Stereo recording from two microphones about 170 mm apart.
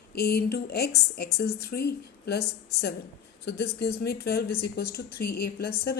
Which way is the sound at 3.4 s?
70° left (ahead or behind).